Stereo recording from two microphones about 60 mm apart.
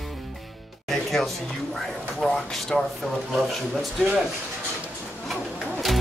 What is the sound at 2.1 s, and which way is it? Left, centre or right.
Speech, centre.